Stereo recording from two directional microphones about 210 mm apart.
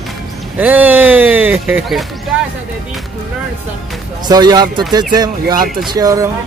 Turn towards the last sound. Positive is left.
turn(degrees=-15)  # may be behind; listen again after turning